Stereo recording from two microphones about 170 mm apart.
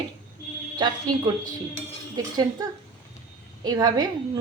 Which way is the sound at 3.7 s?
20° right (ahead or behind).